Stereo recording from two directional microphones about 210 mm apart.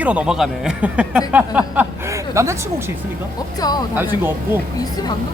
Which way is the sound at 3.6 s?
20° left (ahead or behind).